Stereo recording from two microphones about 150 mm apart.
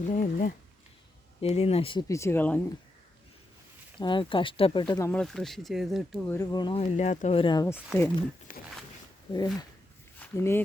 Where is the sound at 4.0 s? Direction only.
30° left (ahead or behind).